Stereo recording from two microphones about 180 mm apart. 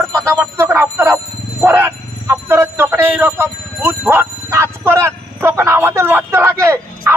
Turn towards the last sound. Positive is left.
turn(degrees=-15)  # may be behind; listen again after turning